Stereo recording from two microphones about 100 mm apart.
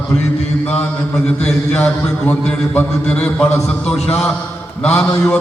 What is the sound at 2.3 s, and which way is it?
A man's voice, 10° left (ahead or behind).